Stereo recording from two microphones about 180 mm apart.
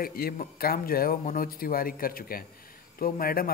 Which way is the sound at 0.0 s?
55° left (ahead or behind).